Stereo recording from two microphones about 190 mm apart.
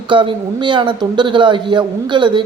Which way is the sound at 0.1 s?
25° right (ahead or behind).